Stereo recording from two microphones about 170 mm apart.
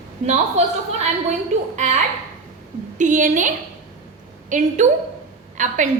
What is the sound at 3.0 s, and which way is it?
A woman's voice, 45° right (ahead or behind).